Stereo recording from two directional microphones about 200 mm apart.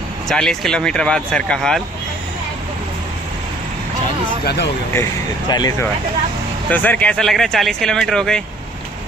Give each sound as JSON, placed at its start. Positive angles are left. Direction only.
{"t": 0.3, "sound": "speech", "side_deg": 0}
{"t": 5.5, "sound": "speech", "side_deg": 20}
{"t": 6.7, "sound": "speech", "side_deg": 10}